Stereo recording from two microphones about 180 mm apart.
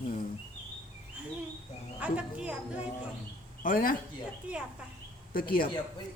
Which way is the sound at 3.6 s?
50° left (ahead or behind).